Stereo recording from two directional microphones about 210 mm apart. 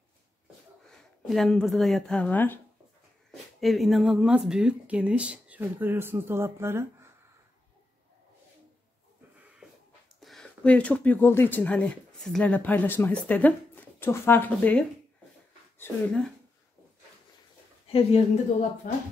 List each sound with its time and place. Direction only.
0.8 s speech: centre (ahead or behind)
10.2 s speech: 5° left (ahead or behind)
17.8 s a woman's voice: 25° left (ahead or behind)